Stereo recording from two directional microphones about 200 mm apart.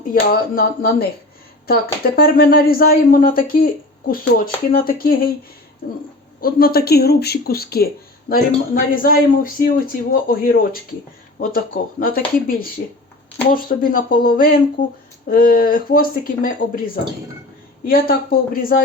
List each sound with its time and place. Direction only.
0.0 s a man's voice: 45° left (ahead or behind)
6.4 s a man's voice: 50° left (ahead or behind)